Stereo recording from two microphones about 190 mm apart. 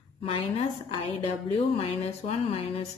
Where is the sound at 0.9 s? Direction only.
30° left (ahead or behind).